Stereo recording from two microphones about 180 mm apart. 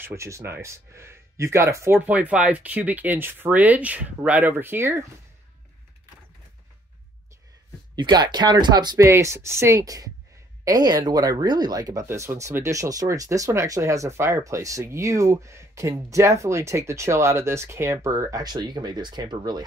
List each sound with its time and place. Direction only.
0.0 s speech: 15° right (ahead or behind)
7.9 s speech: 25° right (ahead or behind)